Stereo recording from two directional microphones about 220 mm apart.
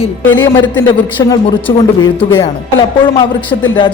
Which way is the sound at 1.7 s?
25° left (ahead or behind).